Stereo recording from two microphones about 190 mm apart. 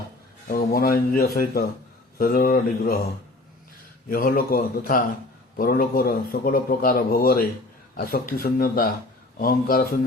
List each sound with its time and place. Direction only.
0.4 s a man's voice: 50° left (ahead or behind)
4.1 s a man's voice: 50° left (ahead or behind)